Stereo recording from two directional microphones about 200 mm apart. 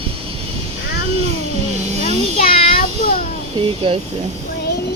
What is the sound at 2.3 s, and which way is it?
Child singing, 30° left (ahead or behind).